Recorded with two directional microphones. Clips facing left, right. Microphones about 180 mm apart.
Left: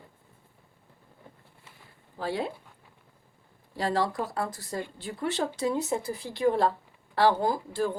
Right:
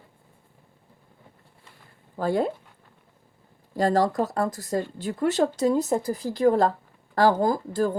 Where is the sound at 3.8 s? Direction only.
45° right (ahead or behind).